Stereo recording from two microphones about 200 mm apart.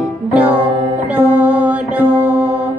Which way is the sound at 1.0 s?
5° right (ahead or behind).